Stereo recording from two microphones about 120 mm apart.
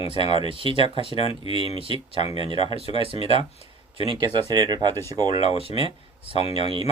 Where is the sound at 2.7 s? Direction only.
55° left (ahead or behind).